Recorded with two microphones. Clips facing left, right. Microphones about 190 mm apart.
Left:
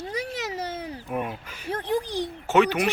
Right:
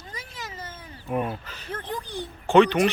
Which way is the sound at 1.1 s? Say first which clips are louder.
Right 4 dB; 10° left (ahead or behind).